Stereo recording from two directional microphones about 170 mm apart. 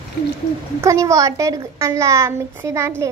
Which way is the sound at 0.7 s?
15° right (ahead or behind).